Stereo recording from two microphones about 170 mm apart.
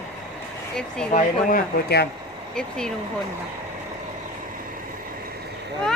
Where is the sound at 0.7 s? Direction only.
5° left (ahead or behind).